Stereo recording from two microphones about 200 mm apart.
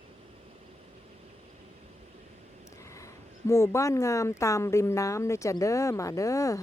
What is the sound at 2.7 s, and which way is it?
Speech, 15° left (ahead or behind).